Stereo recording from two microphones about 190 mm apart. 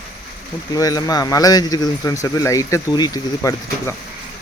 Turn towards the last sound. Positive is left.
turn(degrees=15)  # may be behind; listen again after turning